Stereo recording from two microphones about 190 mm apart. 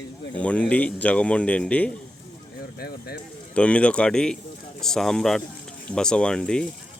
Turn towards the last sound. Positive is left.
turn(degrees=5)  # may be behind; listen again after turning